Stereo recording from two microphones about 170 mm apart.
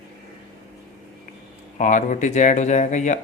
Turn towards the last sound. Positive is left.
turn(degrees=45)  # may be behind; listen again after turning